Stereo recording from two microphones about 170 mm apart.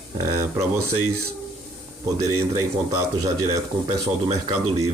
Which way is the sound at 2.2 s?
20° right (ahead or behind).